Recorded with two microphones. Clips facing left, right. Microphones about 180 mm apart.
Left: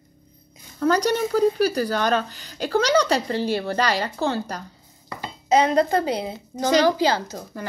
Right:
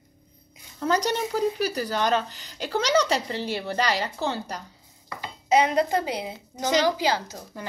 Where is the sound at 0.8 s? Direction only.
25° right (ahead or behind).